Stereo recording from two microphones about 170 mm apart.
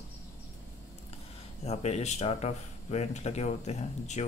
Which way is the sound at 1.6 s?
40° left (ahead or behind).